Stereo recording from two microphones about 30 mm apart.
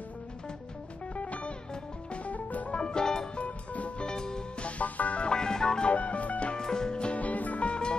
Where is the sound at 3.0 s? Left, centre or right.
Centre.